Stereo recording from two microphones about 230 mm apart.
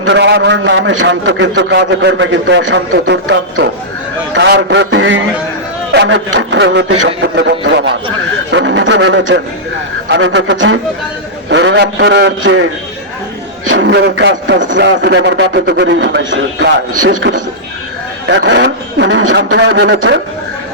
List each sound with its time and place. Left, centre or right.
0.0 s a man's voice: right
4.4 s a man's voice: right
13.7 s a man's voice: right